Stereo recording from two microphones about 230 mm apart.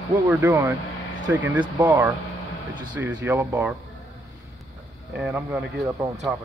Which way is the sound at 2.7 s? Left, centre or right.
Centre.